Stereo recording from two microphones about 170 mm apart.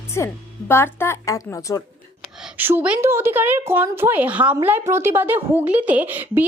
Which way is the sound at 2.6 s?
10° right (ahead or behind).